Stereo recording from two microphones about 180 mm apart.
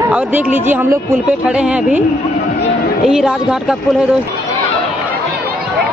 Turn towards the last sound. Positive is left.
turn(degrees=-5)  # may be behind; listen again after turning